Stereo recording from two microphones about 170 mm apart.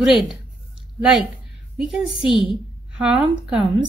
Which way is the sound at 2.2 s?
30° left (ahead or behind).